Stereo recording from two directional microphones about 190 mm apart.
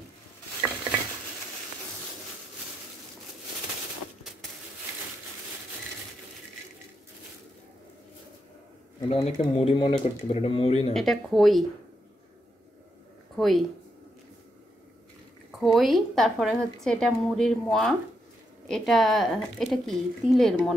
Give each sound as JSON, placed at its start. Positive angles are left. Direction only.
{"t": 9.1, "sound": "speech", "side_deg": 30}
{"t": 10.9, "sound": "a woman's voice", "side_deg": 0}
{"t": 13.4, "sound": "speech", "side_deg": 0}
{"t": 15.6, "sound": "a woman's voice", "side_deg": 0}